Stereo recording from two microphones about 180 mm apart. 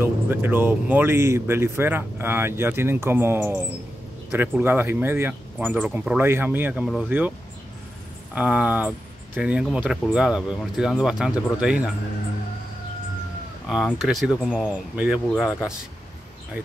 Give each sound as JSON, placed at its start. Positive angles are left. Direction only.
{"t": 0.0, "sound": "speech", "side_deg": -10}
{"t": 8.4, "sound": "speech", "side_deg": -5}
{"t": 13.7, "sound": "speech", "side_deg": 0}